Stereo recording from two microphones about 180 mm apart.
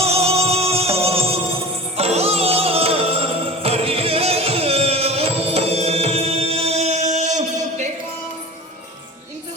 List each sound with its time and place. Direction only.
0.0 s music: 35° right (ahead or behind)